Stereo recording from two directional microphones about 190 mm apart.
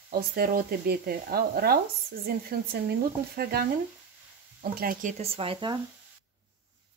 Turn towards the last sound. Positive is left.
turn(degrees=-25)  # may be behind; listen again after turning